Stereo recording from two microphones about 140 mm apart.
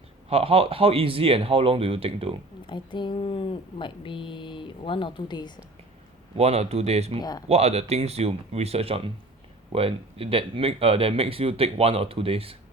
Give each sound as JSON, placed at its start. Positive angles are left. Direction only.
{"t": 0.3, "sound": "speech", "side_deg": -45}
{"t": 2.6, "sound": "speech", "side_deg": 35}
{"t": 6.3, "sound": "speech", "side_deg": -50}
{"t": 7.2, "sound": "speech", "side_deg": 30}
{"t": 7.4, "sound": "speech", "side_deg": -50}